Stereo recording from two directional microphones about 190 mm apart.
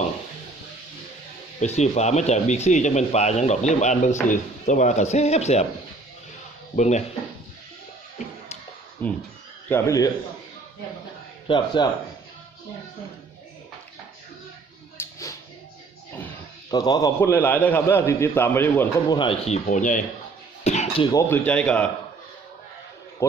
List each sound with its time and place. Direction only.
1.6 s speech: 35° left (ahead or behind)
6.7 s speech: 40° left (ahead or behind)
9.0 s a man's voice: 10° left (ahead or behind)
11.4 s a man's voice: 25° left (ahead or behind)
15.0 s music: 15° left (ahead or behind)
16.7 s a man's voice: 20° left (ahead or behind)
19.1 s speech: 30° left (ahead or behind)
20.6 s cough: 35° left (ahead or behind)
21.1 s a man's voice: 15° left (ahead or behind)